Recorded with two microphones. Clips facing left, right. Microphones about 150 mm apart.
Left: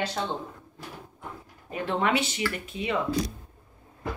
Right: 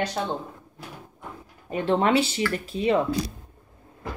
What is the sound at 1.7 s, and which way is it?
Speech, 30° right (ahead or behind).